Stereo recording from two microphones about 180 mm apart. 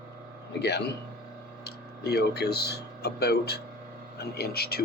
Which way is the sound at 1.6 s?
65° left (ahead or behind).